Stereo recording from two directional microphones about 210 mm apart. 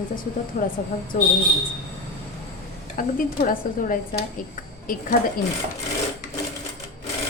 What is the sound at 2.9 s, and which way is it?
A woman's voice, 40° left (ahead or behind).